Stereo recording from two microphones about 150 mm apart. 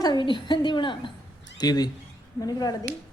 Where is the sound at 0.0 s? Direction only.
30° left (ahead or behind).